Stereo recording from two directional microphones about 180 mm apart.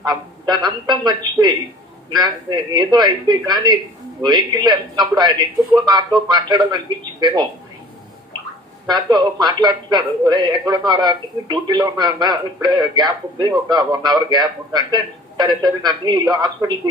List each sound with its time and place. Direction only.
0.0 s a man's voice: 20° right (ahead or behind)
8.8 s a man's voice: 25° right (ahead or behind)